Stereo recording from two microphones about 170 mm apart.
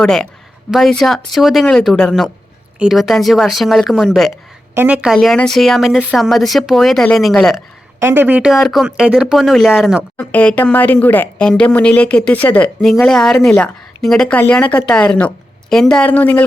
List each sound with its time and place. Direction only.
0.0 s speech: 5° left (ahead or behind)
4.7 s a woman's voice: 10° right (ahead or behind)
8.0 s speech: 10° right (ahead or behind); by 16.4 s 10° left (ahead or behind)